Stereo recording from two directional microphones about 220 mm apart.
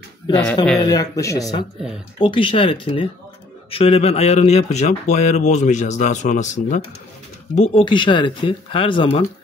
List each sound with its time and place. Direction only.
0.3 s speech: 5° left (ahead or behind)
0.7 s speech: 15° left (ahead or behind); by 6.8 s 35° left (ahead or behind)
7.7 s speech: 20° left (ahead or behind)